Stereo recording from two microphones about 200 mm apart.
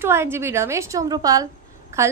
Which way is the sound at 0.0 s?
10° right (ahead or behind).